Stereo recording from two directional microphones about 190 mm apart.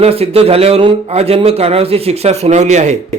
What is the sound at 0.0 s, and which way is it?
Speech, 30° right (ahead or behind).